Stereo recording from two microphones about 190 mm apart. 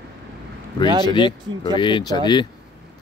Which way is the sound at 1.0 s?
25° left (ahead or behind).